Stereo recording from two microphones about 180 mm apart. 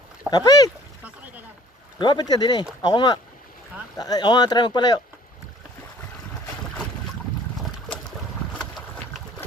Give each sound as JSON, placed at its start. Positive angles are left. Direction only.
{"t": 0.3, "sound": "speech", "side_deg": 20}
{"t": 2.0, "sound": "speech", "side_deg": 25}
{"t": 8.5, "sound": "boat", "side_deg": 0}